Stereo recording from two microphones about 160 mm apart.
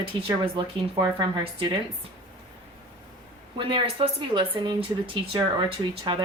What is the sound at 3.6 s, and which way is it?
A woman's voice, 30° right (ahead or behind).